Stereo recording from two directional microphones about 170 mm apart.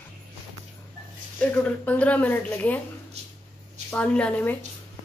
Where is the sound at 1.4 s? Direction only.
10° left (ahead or behind).